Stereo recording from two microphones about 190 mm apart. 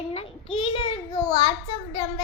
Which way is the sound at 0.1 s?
30° left (ahead or behind).